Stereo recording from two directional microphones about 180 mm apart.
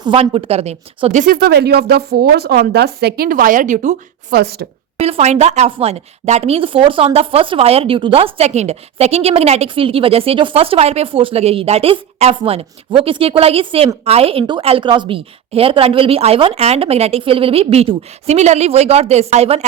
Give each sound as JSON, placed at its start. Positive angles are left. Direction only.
{"t": 0.0, "sound": "a woman's voice", "side_deg": -30}
{"t": 4.4, "sound": "a woman's voice", "side_deg": -65}
{"t": 4.9, "sound": "a woman's voice", "side_deg": -35}